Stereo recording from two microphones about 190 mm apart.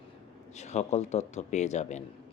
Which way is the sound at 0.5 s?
35° left (ahead or behind).